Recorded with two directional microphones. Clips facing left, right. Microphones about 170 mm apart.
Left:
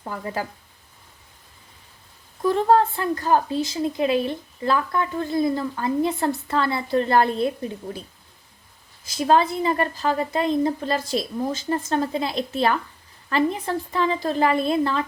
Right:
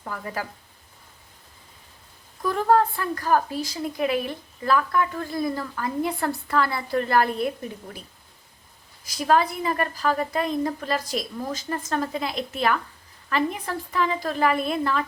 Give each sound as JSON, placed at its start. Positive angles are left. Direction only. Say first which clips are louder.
{"t": 0.0, "sound": "speech", "louder": "left 3 dB", "side_deg": 25}
{"t": 2.4, "sound": "a woman's voice", "louder": "left 2 dB", "side_deg": 25}
{"t": 9.0, "sound": "a woman's voice", "louder": "left 2 dB", "side_deg": 25}